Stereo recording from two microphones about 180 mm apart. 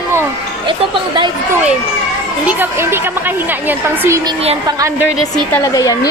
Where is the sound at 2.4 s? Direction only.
10° right (ahead or behind).